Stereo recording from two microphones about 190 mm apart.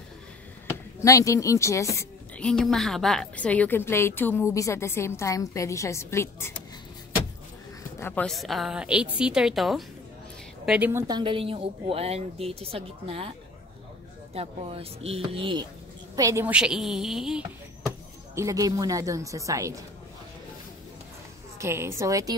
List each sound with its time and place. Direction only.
1.0 s a woman's voice: 15° left (ahead or behind)
2.4 s a woman's voice: 5° left (ahead or behind)
8.0 s a woman's voice: 5° left (ahead or behind); by 13.3 s 30° right (ahead or behind)
14.3 s speech: 30° right (ahead or behind)
16.2 s speech: 15° right (ahead or behind)
18.3 s speech: 15° right (ahead or behind)
21.5 s speech: 15° right (ahead or behind)